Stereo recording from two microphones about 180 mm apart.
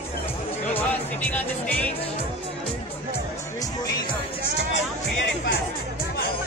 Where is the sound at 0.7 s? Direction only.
10° left (ahead or behind).